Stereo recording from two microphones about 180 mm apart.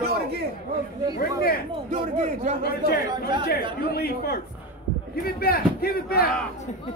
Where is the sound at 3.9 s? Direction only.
60° left (ahead or behind).